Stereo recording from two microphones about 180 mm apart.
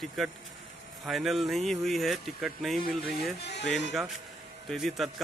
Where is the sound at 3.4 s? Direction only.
70° left (ahead or behind).